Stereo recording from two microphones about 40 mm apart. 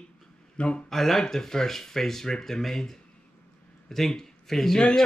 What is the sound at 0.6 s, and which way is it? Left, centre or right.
Speech, left.